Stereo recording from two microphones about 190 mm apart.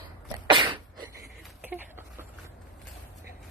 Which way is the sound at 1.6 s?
10° right (ahead or behind).